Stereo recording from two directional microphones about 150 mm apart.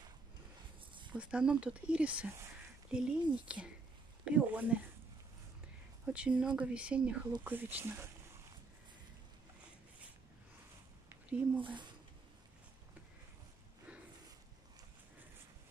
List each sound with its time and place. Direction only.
1.1 s speech: 5° right (ahead or behind)
6.0 s speech: 5° right (ahead or behind)
11.1 s a sound: 10° right (ahead or behind)
11.6 s speech: 30° right (ahead or behind)